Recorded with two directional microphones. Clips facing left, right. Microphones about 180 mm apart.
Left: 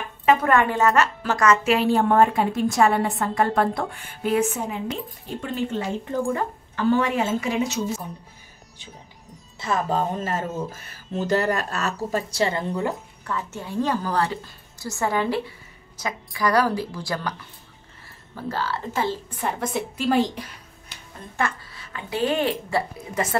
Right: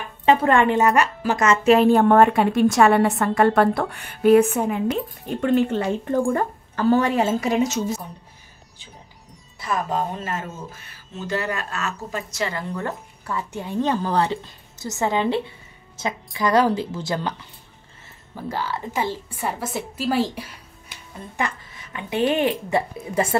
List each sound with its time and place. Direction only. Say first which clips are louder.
0.2 s a woman's voice: right 2 dB; 30° right (ahead or behind); by 1.4 s 15° right (ahead or behind)
1.4 s a woman's voice: left 1 dB; 30° right (ahead or behind)
1.7 s a woman's voice: right 5 dB; 50° right (ahead or behind)
9.6 s speech: left 1 dB; 30° left (ahead or behind)
13.2 s a woman's voice: right 3 dB; 10° right (ahead or behind)
13.7 s a woman's voice: right 2 dB; 25° right (ahead or behind)
18.3 s a woman's voice: even; 15° right (ahead or behind)
21.4 s a woman's voice: left 1 dB; 20° right (ahead or behind)